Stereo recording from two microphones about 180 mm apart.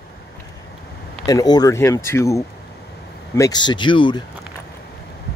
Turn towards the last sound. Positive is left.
turn(degrees=25)  # may be behind; listen again after turning